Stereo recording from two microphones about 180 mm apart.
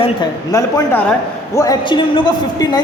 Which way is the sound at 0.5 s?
20° left (ahead or behind).